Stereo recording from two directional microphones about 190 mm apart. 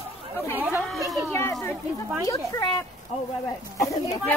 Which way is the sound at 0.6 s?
5° right (ahead or behind).